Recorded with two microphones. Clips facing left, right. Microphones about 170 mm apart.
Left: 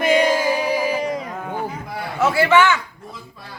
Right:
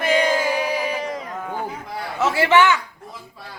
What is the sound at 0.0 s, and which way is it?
Music, 10° left (ahead or behind).